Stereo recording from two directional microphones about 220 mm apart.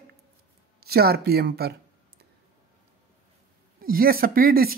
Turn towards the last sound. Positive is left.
turn(degrees=-40)  # may be behind; listen again after turning